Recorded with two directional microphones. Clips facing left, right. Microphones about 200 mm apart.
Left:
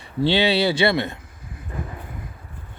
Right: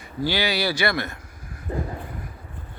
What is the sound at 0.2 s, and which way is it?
Speech, 25° left (ahead or behind).